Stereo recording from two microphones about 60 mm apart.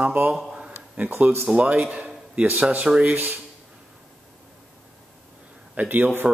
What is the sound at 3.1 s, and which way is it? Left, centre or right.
Speech, right.